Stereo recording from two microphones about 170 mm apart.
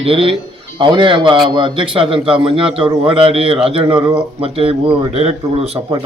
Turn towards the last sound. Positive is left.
turn(degrees=-35)  # may be behind; listen again after turning